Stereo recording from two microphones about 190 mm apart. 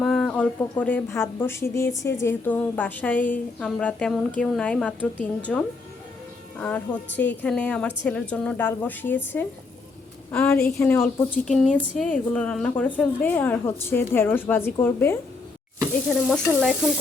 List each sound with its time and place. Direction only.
0.0 s a woman's voice: 5° left (ahead or behind)
16.2 s a woman's voice: centre (ahead or behind)